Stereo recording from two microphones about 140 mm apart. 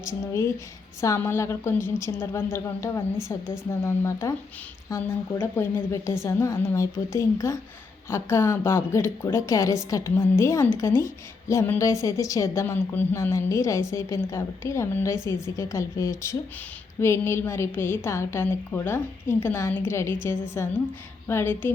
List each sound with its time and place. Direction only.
0.0 s a woman's voice: 20° left (ahead or behind)